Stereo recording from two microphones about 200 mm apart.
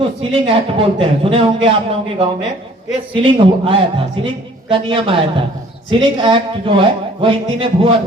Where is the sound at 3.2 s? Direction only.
25° right (ahead or behind).